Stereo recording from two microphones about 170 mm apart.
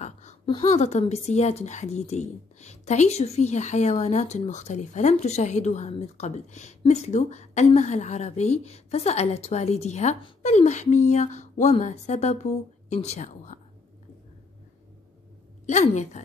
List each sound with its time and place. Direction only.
0.0 s a sound: 45° left (ahead or behind)
0.5 s a woman's voice: 35° left (ahead or behind)
15.6 s speech: 45° left (ahead or behind)